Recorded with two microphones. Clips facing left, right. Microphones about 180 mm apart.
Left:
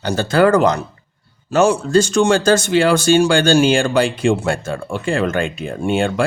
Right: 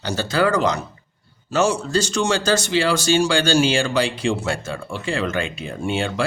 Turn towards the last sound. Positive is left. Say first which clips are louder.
# left 5 dB
turn(degrees=50)  # may be behind; listen again after turning